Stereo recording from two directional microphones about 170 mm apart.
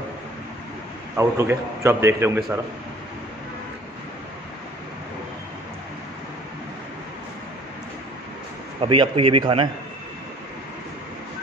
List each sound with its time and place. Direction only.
1.1 s a man's voice: 15° right (ahead or behind)
8.8 s a man's voice: 30° right (ahead or behind)